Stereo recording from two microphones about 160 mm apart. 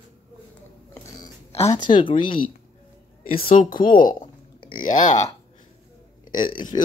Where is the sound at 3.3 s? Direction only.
60° left (ahead or behind).